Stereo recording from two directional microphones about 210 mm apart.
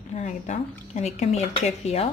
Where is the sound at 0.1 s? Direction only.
35° left (ahead or behind).